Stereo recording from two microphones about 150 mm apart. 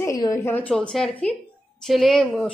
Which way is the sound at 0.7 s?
5° left (ahead or behind).